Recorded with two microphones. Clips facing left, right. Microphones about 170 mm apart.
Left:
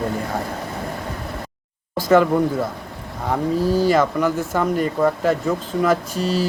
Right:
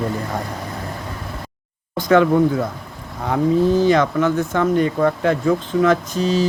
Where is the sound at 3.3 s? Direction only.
5° left (ahead or behind).